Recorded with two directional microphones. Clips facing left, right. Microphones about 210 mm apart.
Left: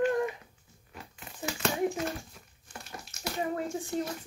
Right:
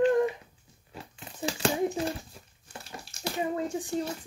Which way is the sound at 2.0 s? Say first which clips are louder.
Right 3 dB; 30° right (ahead or behind).